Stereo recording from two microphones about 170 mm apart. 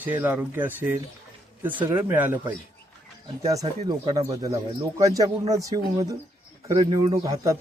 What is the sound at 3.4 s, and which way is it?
Speech, 20° right (ahead or behind).